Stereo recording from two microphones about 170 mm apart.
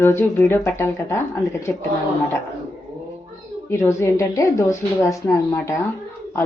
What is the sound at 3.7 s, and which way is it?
Speech, 15° left (ahead or behind).